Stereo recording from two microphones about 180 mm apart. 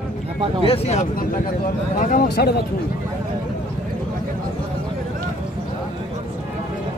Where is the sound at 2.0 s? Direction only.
50° left (ahead or behind).